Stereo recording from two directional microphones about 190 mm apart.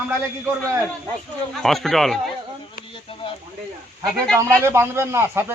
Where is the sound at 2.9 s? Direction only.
30° left (ahead or behind).